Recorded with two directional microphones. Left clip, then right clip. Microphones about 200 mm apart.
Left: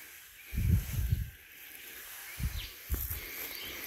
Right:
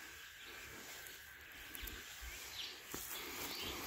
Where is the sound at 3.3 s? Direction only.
20° right (ahead or behind).